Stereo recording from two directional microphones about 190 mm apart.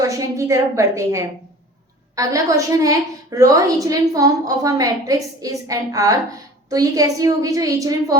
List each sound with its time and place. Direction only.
0.0 s a woman's voice: 15° right (ahead or behind)